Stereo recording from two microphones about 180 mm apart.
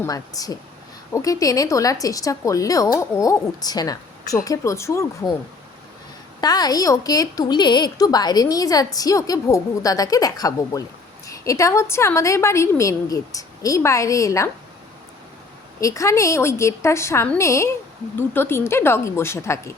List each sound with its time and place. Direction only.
0.0 s a woman's voice: 20° left (ahead or behind)
6.4 s a woman's voice: 20° left (ahead or behind)
15.8 s a woman's voice: 20° left (ahead or behind)